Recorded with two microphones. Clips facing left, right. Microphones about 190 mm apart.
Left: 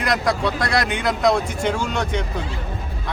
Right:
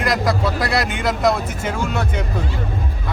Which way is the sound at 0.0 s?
Centre (ahead or behind).